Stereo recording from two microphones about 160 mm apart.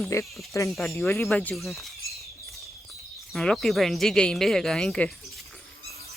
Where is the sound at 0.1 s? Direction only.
20° left (ahead or behind).